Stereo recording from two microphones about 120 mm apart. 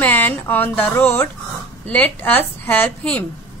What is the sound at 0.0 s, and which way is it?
A woman's voice, 15° left (ahead or behind).